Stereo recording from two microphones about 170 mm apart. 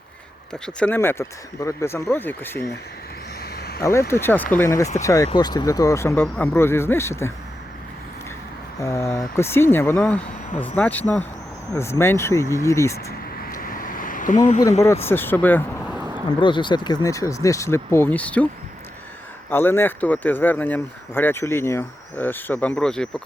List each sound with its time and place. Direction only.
0.6 s speech: 5° left (ahead or behind)
3.4 s vehicle: 65° left (ahead or behind)
4.1 s speech: 10° left (ahead or behind)
8.8 s speech: 15° left (ahead or behind)
13.4 s a sound: 55° left (ahead or behind)
15.0 s speech: 10° left (ahead or behind)
16.0 s a sound: 15° right (ahead or behind)
16.4 s speech: 30° left (ahead or behind); by 18.4 s 10° left (ahead or behind)
19.5 s speech: 15° left (ahead or behind)